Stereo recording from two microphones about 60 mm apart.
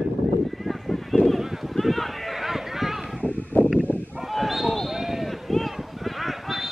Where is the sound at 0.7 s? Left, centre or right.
Centre.